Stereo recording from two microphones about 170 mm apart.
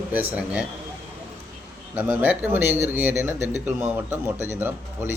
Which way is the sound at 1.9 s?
10° right (ahead or behind).